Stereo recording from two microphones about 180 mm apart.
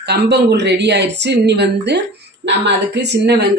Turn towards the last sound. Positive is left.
turn(degrees=-70)  # may be behind; listen again after turning